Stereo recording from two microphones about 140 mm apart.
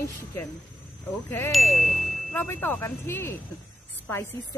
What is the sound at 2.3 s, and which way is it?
Speech, 15° left (ahead or behind).